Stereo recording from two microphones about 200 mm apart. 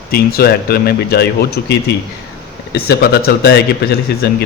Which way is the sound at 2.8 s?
55° left (ahead or behind).